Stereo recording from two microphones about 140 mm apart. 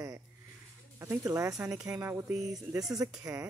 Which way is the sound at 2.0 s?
15° right (ahead or behind).